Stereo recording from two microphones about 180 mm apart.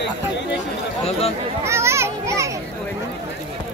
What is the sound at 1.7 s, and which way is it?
Children playing, 15° right (ahead or behind).